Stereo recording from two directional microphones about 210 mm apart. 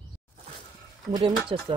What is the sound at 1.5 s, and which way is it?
Speech, 25° right (ahead or behind).